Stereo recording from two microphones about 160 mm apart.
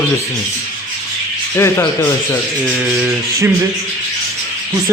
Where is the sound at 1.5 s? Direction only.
15° left (ahead or behind).